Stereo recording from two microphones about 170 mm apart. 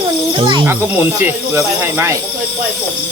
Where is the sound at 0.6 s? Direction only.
10° right (ahead or behind).